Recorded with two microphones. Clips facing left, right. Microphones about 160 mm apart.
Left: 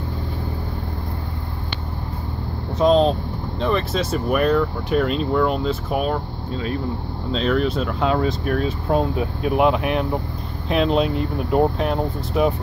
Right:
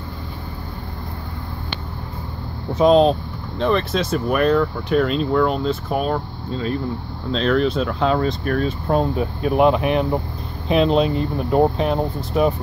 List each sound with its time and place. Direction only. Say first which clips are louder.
2.7 s speech: right 2 dB; 5° right (ahead or behind)
7.3 s speech: right 2 dB; 5° left (ahead or behind)